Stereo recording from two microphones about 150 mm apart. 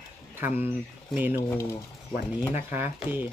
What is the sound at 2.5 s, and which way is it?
Speech, 15° right (ahead or behind).